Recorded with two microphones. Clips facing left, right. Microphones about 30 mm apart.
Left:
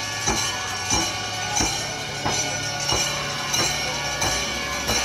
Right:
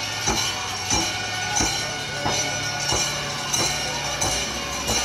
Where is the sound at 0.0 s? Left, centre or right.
Centre.